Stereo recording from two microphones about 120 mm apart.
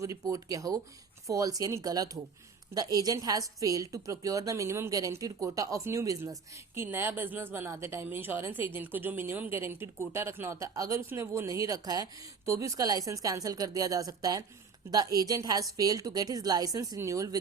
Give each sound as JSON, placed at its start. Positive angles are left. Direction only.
{"t": 0.0, "sound": "a woman's voice", "side_deg": -30}